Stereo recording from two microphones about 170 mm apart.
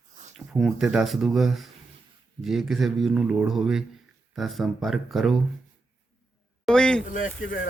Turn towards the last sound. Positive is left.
turn(degrees=55)  # may be behind; listen again after turning